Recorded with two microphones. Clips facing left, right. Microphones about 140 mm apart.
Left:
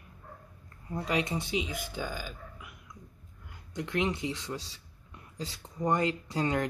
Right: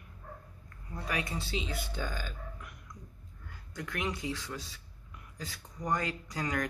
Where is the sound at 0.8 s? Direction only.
20° left (ahead or behind); by 3.0 s 5° left (ahead or behind).